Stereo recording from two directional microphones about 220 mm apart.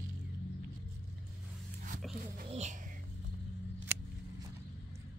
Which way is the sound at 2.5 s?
30° right (ahead or behind).